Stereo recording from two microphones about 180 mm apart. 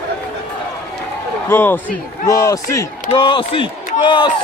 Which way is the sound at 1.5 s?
10° left (ahead or behind).